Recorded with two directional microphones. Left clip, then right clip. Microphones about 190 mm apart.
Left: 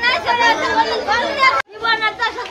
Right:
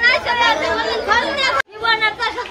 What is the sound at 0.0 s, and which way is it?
Chatter, 20° right (ahead or behind).